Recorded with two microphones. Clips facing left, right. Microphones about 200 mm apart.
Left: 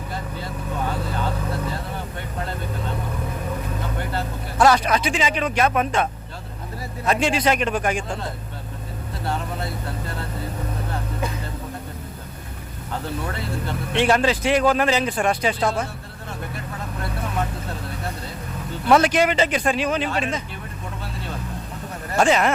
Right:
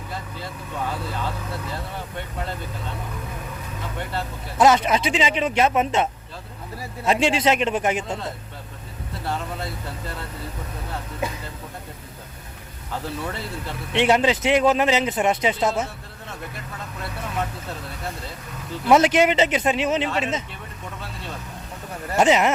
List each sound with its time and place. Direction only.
4.5 s a man's voice: 20° right (ahead or behind)
9.2 s speech: centre (ahead or behind)
13.9 s a man's voice: 20° right (ahead or behind)
18.9 s a man's voice: 20° right (ahead or behind)
22.1 s a man's voice: 20° right (ahead or behind)